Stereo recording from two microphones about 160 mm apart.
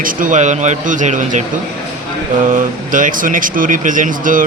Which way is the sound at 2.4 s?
55° right (ahead or behind).